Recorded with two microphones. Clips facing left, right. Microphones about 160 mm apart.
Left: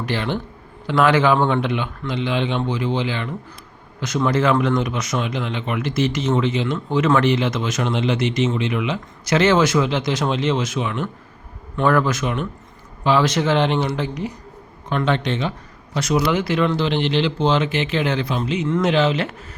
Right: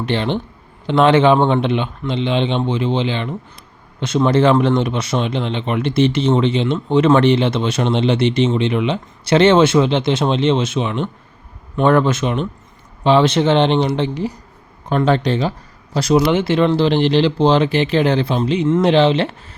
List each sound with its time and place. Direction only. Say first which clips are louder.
0.0 s speech: right 4 dB; 25° right (ahead or behind)